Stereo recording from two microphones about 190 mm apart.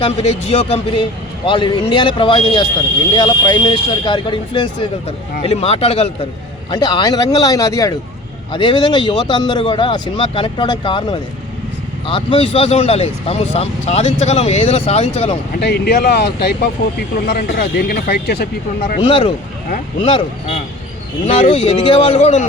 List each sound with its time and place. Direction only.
0.0 s speech: 30° left (ahead or behind)
15.6 s speech: 55° left (ahead or behind)
18.9 s speech: 30° left (ahead or behind)